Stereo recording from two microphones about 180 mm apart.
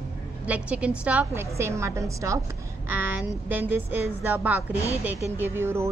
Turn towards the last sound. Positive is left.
turn(degrees=-15)  # may be behind; listen again after turning